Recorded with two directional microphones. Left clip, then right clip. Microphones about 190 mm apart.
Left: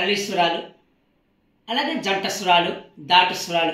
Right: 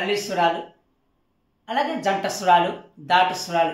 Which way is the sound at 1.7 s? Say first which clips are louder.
Even; 15° right (ahead or behind).